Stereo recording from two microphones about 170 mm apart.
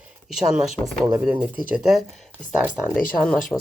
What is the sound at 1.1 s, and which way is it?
Speech, 20° right (ahead or behind).